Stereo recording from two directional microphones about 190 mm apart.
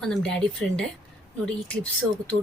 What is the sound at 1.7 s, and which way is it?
Speech, 5° left (ahead or behind).